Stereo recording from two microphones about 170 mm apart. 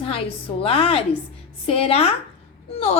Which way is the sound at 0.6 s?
35° left (ahead or behind).